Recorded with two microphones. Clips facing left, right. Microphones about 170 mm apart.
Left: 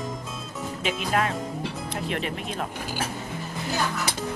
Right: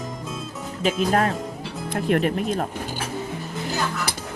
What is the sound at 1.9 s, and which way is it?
Speech, 50° right (ahead or behind).